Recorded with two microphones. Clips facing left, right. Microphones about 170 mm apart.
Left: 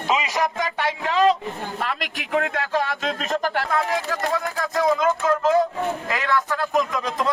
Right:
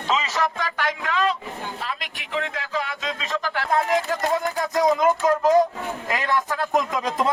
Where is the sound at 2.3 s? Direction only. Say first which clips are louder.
Left 5 dB; 55° left (ahead or behind).